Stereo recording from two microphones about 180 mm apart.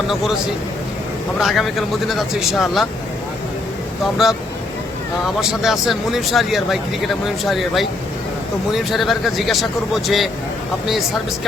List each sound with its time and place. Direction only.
0.1 s speech: centre (ahead or behind)
1.4 s speech: centre (ahead or behind)
4.0 s speech: centre (ahead or behind)